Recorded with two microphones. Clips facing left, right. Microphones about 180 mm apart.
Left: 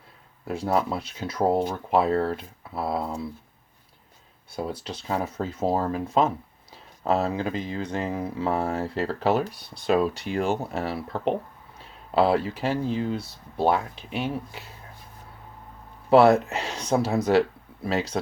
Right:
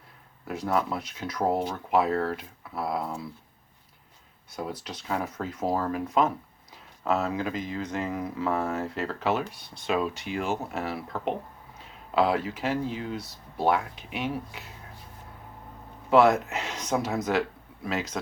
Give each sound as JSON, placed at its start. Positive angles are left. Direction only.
{"t": 0.4, "sound": "speech", "side_deg": 30}
{"t": 4.5, "sound": "speech", "side_deg": 30}
{"t": 16.0, "sound": "speech", "side_deg": 35}